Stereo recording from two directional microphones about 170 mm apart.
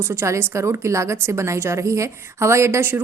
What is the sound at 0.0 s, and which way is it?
A woman's voice, 15° right (ahead or behind).